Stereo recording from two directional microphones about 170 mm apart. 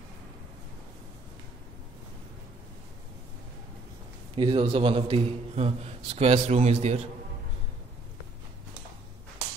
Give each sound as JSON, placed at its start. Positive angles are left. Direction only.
{"t": 4.4, "sound": "a man's voice", "side_deg": -30}